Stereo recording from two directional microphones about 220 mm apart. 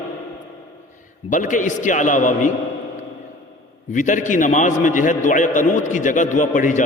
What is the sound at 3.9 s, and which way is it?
A man's voice, 35° left (ahead or behind).